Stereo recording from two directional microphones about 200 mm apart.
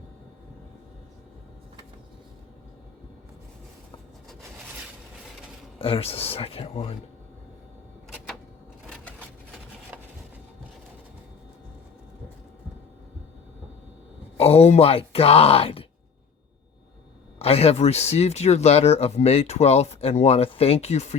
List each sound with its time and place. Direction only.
5.8 s speech: 30° left (ahead or behind)
14.3 s speech: 30° left (ahead or behind)
17.4 s speech: 30° left (ahead or behind)